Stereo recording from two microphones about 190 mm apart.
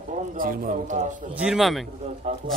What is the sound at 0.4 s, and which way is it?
Speech, 45° right (ahead or behind).